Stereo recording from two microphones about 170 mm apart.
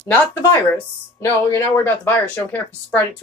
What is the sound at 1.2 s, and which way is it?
Speech, 15° left (ahead or behind).